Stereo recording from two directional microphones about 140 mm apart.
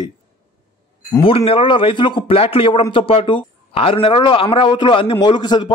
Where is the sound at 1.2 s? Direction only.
40° left (ahead or behind).